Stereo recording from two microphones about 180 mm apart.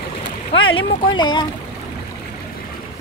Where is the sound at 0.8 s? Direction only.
25° left (ahead or behind).